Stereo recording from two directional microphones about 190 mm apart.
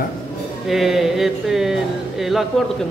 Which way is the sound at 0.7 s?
Centre (ahead or behind).